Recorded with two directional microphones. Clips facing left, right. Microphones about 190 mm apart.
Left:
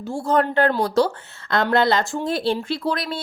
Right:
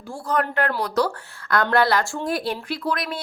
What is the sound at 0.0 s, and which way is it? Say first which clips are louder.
Speech: left 4 dB; 25° left (ahead or behind).